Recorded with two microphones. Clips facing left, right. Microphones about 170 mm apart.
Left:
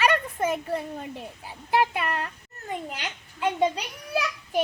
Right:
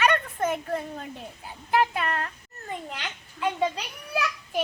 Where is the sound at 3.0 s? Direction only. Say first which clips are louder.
Even; 20° left (ahead or behind).